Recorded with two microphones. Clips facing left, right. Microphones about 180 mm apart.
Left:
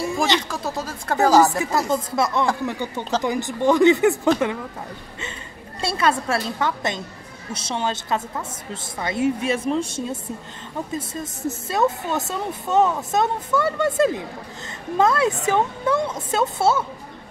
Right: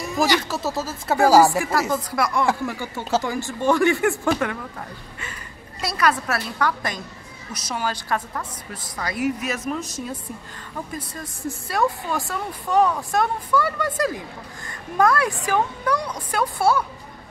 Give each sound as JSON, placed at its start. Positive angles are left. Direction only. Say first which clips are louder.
{"t": 0.5, "sound": "speech", "louder": "right 2 dB", "side_deg": -5}
{"t": 1.9, "sound": "speech", "louder": "left 2 dB", "side_deg": 25}
{"t": 3.0, "sound": "speech", "louder": "right 2 dB", "side_deg": -5}
{"t": 3.3, "sound": "speech", "louder": "left 6 dB", "side_deg": 20}
{"t": 5.8, "sound": "speech", "louder": "left 1 dB", "side_deg": 25}